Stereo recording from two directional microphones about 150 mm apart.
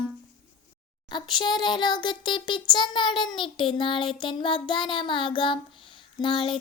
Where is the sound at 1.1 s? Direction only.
30° left (ahead or behind).